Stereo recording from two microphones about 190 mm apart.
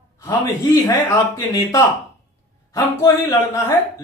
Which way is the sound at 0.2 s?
15° left (ahead or behind).